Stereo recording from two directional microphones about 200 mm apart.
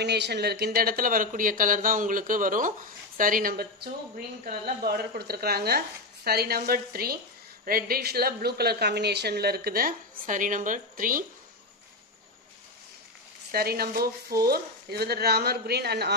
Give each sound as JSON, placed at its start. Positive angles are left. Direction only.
{"t": 0.0, "sound": "speech", "side_deg": -55}
{"t": 13.5, "sound": "speech", "side_deg": -50}